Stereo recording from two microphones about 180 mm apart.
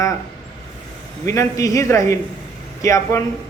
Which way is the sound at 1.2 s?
15° left (ahead or behind).